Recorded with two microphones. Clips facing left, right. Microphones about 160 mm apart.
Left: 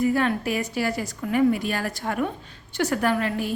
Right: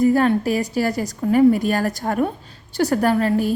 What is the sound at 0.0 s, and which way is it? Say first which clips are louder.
A woman's voice: right 6 dB; 40° right (ahead or behind).